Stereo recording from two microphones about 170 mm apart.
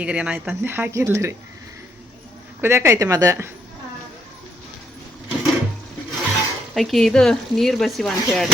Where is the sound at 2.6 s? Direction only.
15° right (ahead or behind).